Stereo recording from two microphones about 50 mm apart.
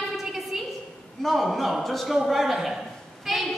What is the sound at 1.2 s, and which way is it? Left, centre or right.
A man's voice, centre.